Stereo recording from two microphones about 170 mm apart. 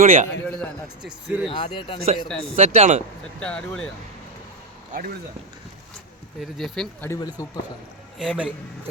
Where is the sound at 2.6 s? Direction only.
40° right (ahead or behind).